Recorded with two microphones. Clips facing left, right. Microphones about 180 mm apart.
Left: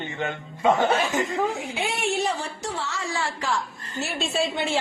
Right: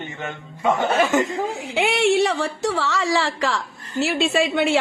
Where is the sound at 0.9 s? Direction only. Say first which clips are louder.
Right 5 dB; 70° right (ahead or behind).